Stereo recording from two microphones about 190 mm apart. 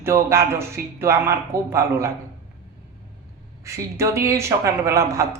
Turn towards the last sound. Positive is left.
turn(degrees=-15)  # may be behind; listen again after turning